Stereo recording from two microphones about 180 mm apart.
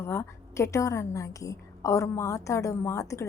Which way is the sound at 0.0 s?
15° left (ahead or behind).